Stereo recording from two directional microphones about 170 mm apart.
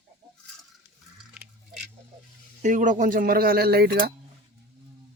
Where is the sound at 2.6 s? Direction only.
45° right (ahead or behind); by 4.1 s 70° right (ahead or behind).